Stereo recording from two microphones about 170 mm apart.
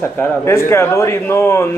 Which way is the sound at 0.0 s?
15° left (ahead or behind).